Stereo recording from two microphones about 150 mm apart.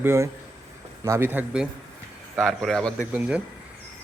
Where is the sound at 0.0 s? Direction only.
15° right (ahead or behind).